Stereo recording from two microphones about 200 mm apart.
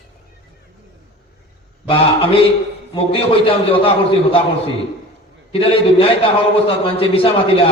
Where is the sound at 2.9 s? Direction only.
25° left (ahead or behind).